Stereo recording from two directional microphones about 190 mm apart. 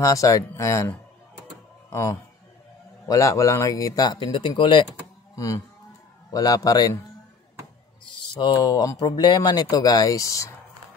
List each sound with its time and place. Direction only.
0.0 s a man's voice: 15° left (ahead or behind)
8.4 s speech: 20° left (ahead or behind)